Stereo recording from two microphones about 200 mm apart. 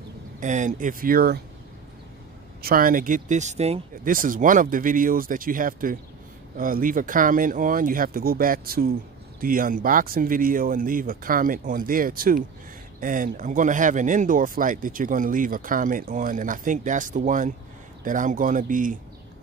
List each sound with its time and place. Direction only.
0.4 s speech: 40° right (ahead or behind)
2.6 s speech: 45° right (ahead or behind)